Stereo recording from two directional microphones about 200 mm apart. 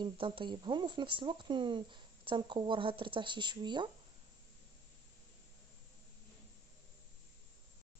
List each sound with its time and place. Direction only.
0.0 s speech: 25° right (ahead or behind)